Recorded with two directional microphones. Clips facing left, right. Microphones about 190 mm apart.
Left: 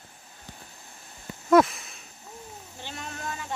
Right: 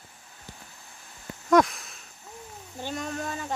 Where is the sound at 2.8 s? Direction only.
45° right (ahead or behind).